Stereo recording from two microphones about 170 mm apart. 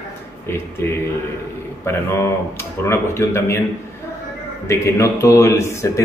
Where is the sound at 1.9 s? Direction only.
15° left (ahead or behind).